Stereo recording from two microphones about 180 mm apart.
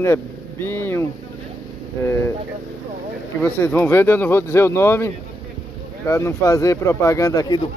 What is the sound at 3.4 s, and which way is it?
Speech, 10° left (ahead or behind).